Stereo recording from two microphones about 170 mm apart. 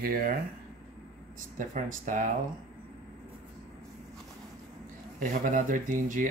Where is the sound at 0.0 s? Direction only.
60° right (ahead or behind).